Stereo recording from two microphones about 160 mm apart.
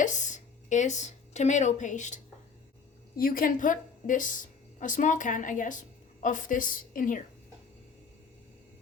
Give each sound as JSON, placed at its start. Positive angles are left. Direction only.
{"t": 0.0, "sound": "speech", "side_deg": 50}
{"t": 3.2, "sound": "a woman's voice", "side_deg": 65}